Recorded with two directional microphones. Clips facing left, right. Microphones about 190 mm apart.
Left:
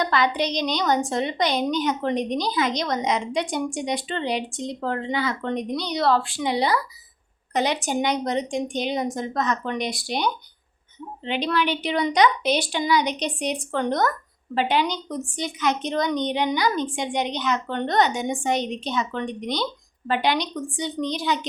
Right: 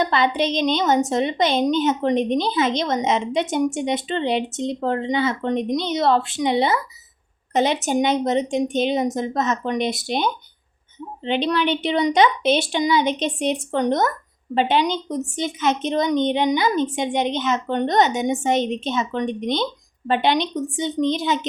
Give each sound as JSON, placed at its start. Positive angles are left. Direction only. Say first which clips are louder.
{"t": 0.0, "sound": "a woman's voice", "louder": "right 3 dB", "side_deg": -25}